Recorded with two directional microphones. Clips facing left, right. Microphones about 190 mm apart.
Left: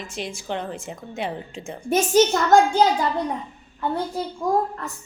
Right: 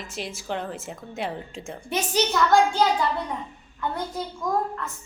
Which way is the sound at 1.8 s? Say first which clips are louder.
Left 8 dB; 45° left (ahead or behind).